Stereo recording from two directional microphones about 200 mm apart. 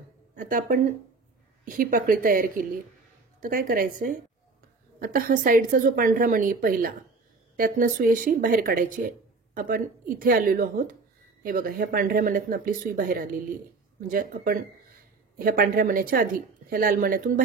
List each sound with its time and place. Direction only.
0.4 s speech: 45° right (ahead or behind)
4.9 s speech: 45° right (ahead or behind)